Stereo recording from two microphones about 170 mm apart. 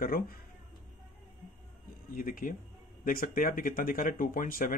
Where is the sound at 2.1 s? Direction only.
55° left (ahead or behind).